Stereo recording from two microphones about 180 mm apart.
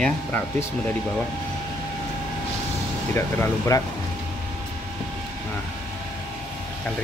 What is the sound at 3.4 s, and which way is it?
Speech, 20° left (ahead or behind).